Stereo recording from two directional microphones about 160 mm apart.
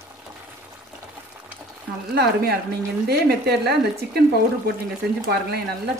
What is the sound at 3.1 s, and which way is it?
Speech, 90° right.